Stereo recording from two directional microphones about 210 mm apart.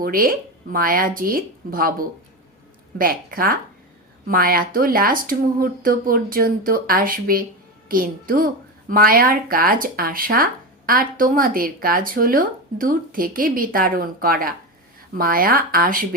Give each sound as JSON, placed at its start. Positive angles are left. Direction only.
{"t": 0.0, "sound": "speech", "side_deg": -45}